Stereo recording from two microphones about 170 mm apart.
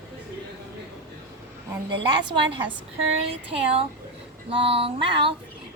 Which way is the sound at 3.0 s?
35° right (ahead or behind).